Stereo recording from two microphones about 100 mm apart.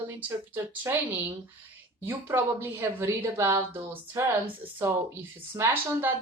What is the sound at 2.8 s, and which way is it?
Speech, 25° right (ahead or behind).